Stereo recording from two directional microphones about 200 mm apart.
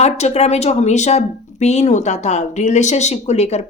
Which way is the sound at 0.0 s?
35° left (ahead or behind).